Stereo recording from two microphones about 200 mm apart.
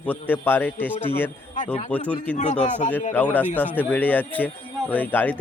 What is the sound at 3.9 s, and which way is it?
A man's voice, 10° left (ahead or behind).